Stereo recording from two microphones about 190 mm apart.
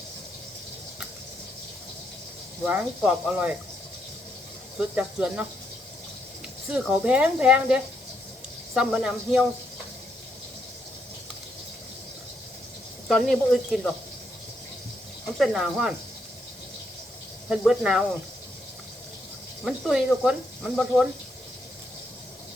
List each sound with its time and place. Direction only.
2.6 s speech: 10° right (ahead or behind)
4.8 s speech: 5° right (ahead or behind)
6.7 s speech: 5° right (ahead or behind)
13.1 s speech: centre (ahead or behind)
15.4 s speech: centre (ahead or behind)
17.6 s speech: 5° right (ahead or behind)
19.6 s speech: 5° right (ahead or behind)